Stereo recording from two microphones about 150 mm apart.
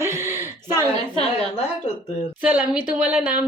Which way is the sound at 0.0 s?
15° right (ahead or behind).